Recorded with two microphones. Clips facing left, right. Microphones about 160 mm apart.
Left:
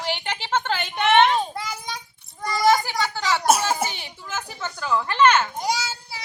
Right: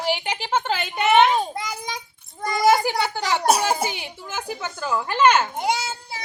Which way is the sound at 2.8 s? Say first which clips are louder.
Right 2 dB; 15° right (ahead or behind).